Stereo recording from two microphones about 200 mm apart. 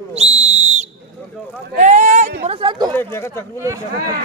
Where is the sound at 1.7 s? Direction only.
35° right (ahead or behind).